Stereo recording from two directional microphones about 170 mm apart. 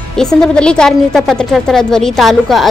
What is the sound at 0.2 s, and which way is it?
Speech, 5° left (ahead or behind).